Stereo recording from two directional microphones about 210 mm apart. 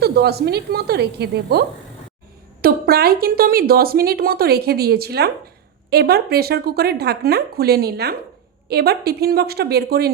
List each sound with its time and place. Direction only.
0.0 s speech: 50° right (ahead or behind)